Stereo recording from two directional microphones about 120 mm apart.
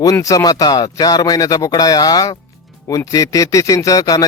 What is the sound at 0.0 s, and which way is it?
A man's voice, 30° left (ahead or behind).